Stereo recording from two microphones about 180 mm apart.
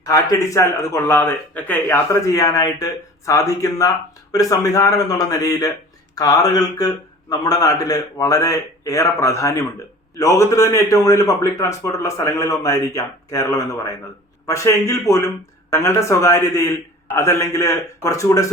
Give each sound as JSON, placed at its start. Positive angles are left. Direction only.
{"t": 0.0, "sound": "a man's voice", "side_deg": 20}